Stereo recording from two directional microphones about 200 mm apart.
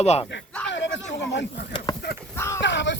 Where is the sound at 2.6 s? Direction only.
65° left (ahead or behind).